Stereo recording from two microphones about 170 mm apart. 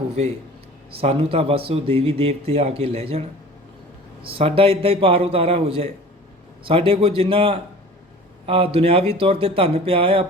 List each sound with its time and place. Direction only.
1.0 s a man's voice: 35° right (ahead or behind)